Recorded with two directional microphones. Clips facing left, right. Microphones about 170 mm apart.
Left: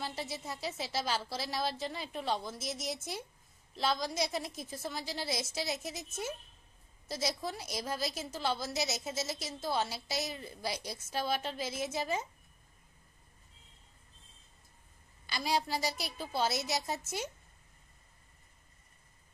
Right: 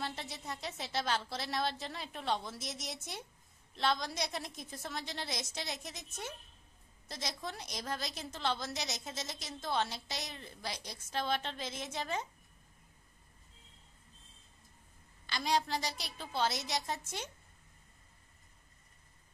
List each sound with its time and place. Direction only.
0.0 s a woman's voice: 5° left (ahead or behind)
7.1 s a woman's voice: 5° left (ahead or behind)
15.2 s a woman's voice: 10° left (ahead or behind)